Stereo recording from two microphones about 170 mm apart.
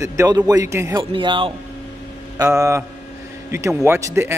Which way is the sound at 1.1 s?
30° right (ahead or behind).